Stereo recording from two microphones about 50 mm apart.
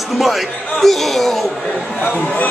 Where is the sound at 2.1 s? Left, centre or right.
Left.